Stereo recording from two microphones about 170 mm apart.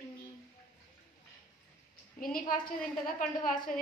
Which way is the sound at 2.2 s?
55° left (ahead or behind).